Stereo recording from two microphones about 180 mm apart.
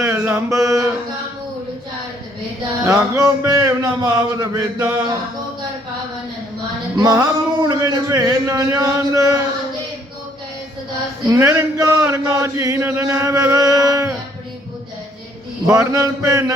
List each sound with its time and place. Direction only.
0.0 s mantra: 15° right (ahead or behind)
2.8 s speech: 15° right (ahead or behind)
6.9 s a man's voice: 20° right (ahead or behind)
11.3 s a man's voice: 15° right (ahead or behind)
15.6 s a man's voice: 20° right (ahead or behind)